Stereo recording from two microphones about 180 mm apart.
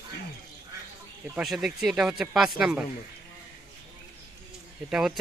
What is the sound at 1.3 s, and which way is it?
Speech, 5° right (ahead or behind).